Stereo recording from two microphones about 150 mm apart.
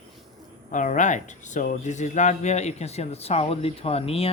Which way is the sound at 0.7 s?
60° left (ahead or behind).